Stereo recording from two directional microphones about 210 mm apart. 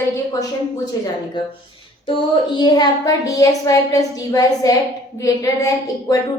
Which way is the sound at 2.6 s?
20° left (ahead or behind).